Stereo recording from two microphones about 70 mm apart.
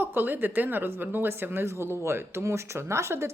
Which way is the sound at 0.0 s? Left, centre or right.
Right.